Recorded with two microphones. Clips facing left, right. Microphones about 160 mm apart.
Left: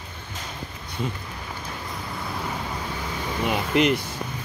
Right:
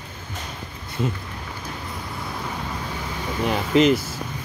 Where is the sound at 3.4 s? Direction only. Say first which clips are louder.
Right 4 dB; 5° left (ahead or behind).